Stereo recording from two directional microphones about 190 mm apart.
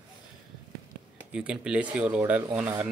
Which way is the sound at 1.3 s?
5° right (ahead or behind).